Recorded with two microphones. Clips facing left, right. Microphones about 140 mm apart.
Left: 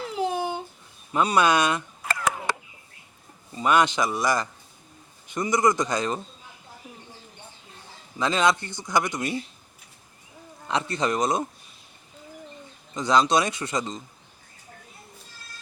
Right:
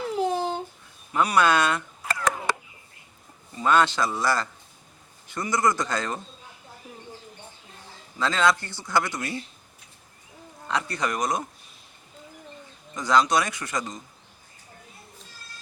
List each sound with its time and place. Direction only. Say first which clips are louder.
0.2 s a sound: even; 10° left (ahead or behind)
1.1 s speech: even; 20° left (ahead or behind)
3.5 s a man's voice: even; 15° left (ahead or behind)
8.2 s speech: left 1 dB; 20° left (ahead or behind)
10.7 s speech: left 2 dB; 25° left (ahead or behind)
13.0 s speech: left 1 dB; 20° left (ahead or behind)